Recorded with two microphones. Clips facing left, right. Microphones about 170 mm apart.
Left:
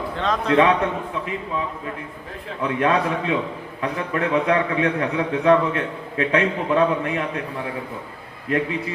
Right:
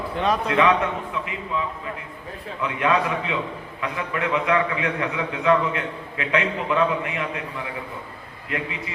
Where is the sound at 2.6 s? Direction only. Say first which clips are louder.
Left 2 dB; 40° left (ahead or behind).